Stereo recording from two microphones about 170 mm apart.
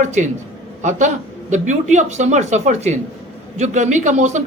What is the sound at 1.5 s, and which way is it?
A man's voice, 45° right (ahead or behind).